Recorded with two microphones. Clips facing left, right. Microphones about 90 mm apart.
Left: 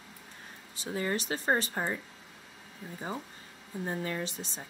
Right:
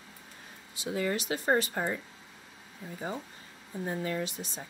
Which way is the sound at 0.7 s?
35° left (ahead or behind).